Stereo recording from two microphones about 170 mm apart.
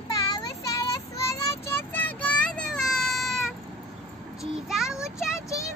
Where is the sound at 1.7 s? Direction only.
10° left (ahead or behind).